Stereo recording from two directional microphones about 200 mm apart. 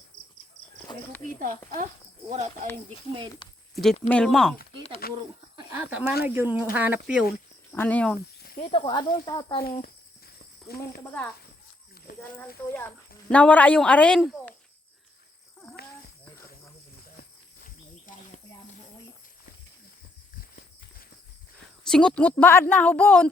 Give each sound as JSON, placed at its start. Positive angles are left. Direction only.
{"t": 0.9, "sound": "a sound", "side_deg": 20}
{"t": 1.4, "sound": "speech", "side_deg": -45}
{"t": 4.1, "sound": "speech", "side_deg": 5}
{"t": 5.0, "sound": "speech", "side_deg": 50}
{"t": 5.5, "sound": "speech", "side_deg": -10}
{"t": 7.7, "sound": "a woman's voice", "side_deg": 10}
{"t": 8.6, "sound": "speech", "side_deg": 25}
{"t": 9.6, "sound": "speech", "side_deg": 45}
{"t": 11.0, "sound": "a woman's voice", "side_deg": 10}
{"t": 13.3, "sound": "speech", "side_deg": 5}
{"t": 17.2, "sound": "a sound", "side_deg": 45}
{"t": 21.8, "sound": "a woman's voice", "side_deg": 5}